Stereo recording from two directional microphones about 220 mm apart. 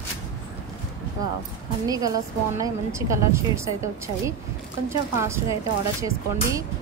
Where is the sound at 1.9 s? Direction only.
15° right (ahead or behind).